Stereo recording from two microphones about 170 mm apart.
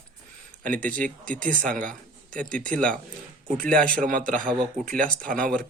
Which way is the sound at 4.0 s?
55° right (ahead or behind).